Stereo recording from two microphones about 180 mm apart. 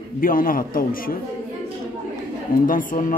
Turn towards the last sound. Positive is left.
turn(degrees=50)  # may be behind; listen again after turning